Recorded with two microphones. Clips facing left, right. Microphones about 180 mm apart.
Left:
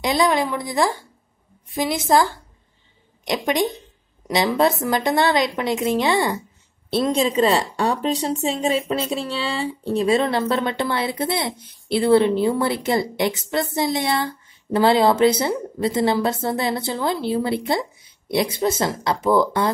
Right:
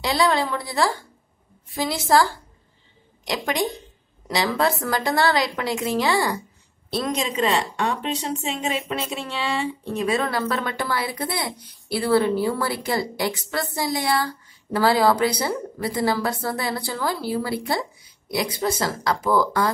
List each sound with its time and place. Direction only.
0.0 s a woman's voice: 20° left (ahead or behind)